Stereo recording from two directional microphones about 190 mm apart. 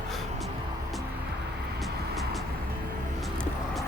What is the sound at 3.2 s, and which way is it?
Vehicle, centre (ahead or behind).